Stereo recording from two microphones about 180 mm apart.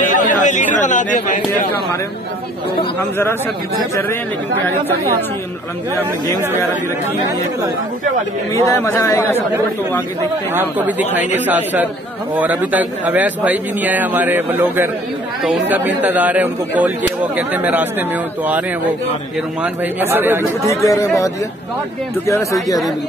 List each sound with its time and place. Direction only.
0.0 s chatter: 45° left (ahead or behind)
8.6 s speech: 15° left (ahead or behind)
10.5 s a man's voice: 10° right (ahead or behind)
19.6 s a man's voice: 10° right (ahead or behind)
20.6 s speech: 15° left (ahead or behind)
22.3 s speech: 15° left (ahead or behind)